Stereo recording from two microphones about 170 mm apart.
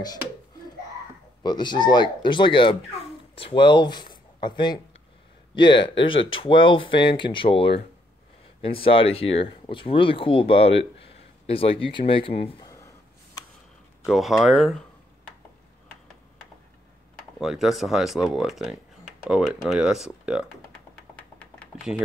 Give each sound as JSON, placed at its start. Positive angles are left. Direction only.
{"t": 1.4, "sound": "speech", "side_deg": 25}
{"t": 12.6, "sound": "a sound", "side_deg": 20}
{"t": 14.0, "sound": "speech", "side_deg": 0}
{"t": 17.4, "sound": "speech", "side_deg": 0}